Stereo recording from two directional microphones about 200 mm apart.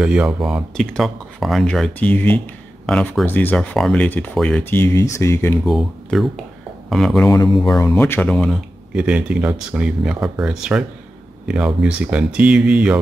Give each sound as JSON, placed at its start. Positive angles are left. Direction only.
{"t": 0.0, "sound": "speech", "side_deg": -5}
{"t": 5.7, "sound": "speech", "side_deg": 0}
{"t": 7.2, "sound": "speech", "side_deg": 20}